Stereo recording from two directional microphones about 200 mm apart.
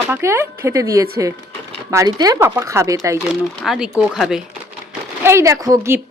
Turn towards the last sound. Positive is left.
turn(degrees=-15)  # may be behind; listen again after turning